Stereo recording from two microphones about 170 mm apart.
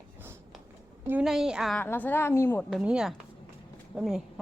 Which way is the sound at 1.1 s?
5° right (ahead or behind).